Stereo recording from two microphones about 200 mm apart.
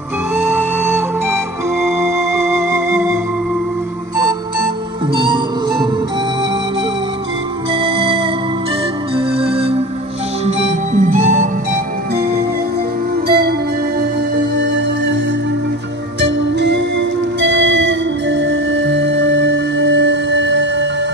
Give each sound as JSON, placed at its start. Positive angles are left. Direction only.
{"t": 0.4, "sound": "music", "side_deg": -10}
{"t": 4.2, "sound": "music", "side_deg": -20}
{"t": 7.7, "sound": "music", "side_deg": -25}
{"t": 9.1, "sound": "organ", "side_deg": -30}
{"t": 10.4, "sound": "music", "side_deg": -35}
{"t": 16.2, "sound": "music", "side_deg": -60}